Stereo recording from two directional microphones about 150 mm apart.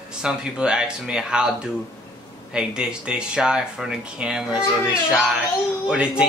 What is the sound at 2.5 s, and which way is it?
Speech, 5° right (ahead or behind).